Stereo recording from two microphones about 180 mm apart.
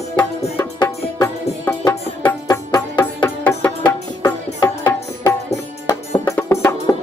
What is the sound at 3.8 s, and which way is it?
Music, 20° left (ahead or behind).